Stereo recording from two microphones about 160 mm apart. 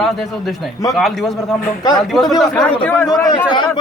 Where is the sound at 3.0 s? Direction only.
20° left (ahead or behind).